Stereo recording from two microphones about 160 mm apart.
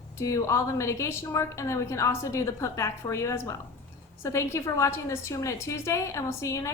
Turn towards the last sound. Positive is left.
turn(degrees=20)  # may be behind; listen again after turning